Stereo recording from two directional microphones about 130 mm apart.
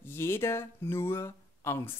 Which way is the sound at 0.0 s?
20° left (ahead or behind).